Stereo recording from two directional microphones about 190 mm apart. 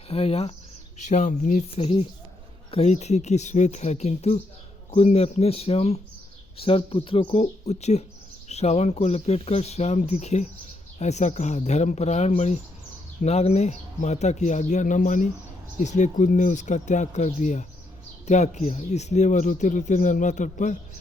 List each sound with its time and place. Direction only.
0.1 s speech: 30° left (ahead or behind)